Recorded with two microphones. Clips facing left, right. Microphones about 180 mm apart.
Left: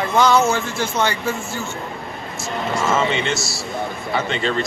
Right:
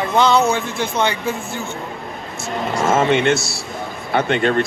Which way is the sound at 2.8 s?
55° right (ahead or behind).